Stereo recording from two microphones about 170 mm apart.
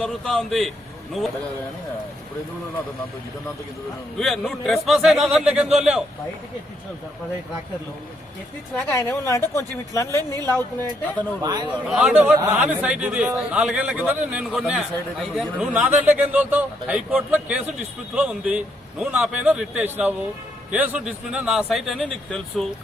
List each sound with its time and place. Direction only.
0.0 s speech: centre (ahead or behind)
4.2 s speech: centre (ahead or behind)
8.7 s speech: 10° left (ahead or behind)
11.4 s a man's voice: 25° right (ahead or behind)
11.9 s a man's voice: 5° right (ahead or behind)